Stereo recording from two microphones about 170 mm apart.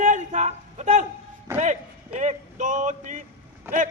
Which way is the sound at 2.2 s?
45° right (ahead or behind).